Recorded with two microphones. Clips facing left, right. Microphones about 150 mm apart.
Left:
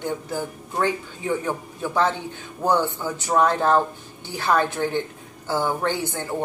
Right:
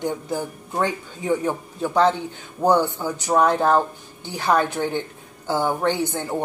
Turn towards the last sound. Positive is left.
turn(degrees=-15)  # may be behind; listen again after turning